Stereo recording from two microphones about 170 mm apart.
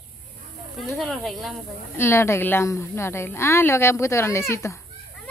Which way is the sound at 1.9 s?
15° left (ahead or behind).